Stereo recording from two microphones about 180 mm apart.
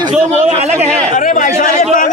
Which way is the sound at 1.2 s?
45° left (ahead or behind).